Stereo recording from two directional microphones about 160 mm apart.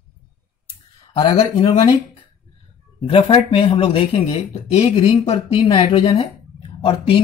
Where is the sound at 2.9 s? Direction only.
35° left (ahead or behind).